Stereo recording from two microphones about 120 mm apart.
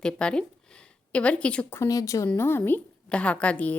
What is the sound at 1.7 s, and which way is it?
A woman's voice, 25° left (ahead or behind).